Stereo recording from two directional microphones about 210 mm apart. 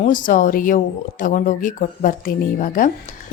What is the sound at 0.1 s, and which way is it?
A woman's voice, 40° left (ahead or behind).